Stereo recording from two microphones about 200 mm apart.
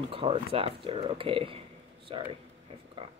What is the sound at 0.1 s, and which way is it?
Speech, 30° right (ahead or behind).